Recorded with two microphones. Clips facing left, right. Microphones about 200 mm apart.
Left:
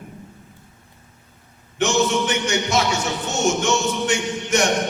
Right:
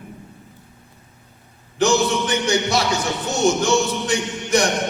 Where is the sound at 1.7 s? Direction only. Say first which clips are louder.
Right 1 dB; 35° right (ahead or behind).